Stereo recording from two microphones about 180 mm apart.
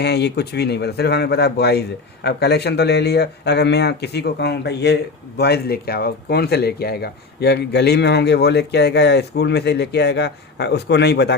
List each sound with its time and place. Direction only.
0.0 s speech: 65° left (ahead or behind)